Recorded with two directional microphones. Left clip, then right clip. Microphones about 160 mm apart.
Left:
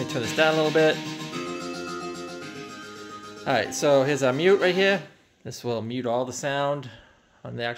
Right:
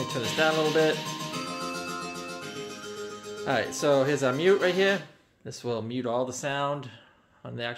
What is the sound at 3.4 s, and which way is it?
Speech, 25° left (ahead or behind).